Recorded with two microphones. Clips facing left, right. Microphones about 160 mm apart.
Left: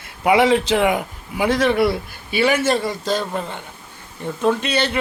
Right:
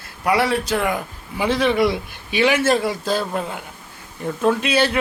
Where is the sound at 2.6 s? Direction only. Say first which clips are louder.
Right 1 dB; 5° right (ahead or behind).